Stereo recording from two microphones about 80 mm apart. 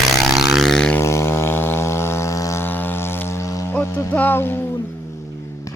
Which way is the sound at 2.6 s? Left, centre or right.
Left.